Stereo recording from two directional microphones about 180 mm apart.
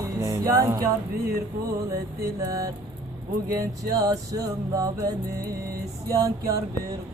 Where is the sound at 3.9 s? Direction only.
20° right (ahead or behind).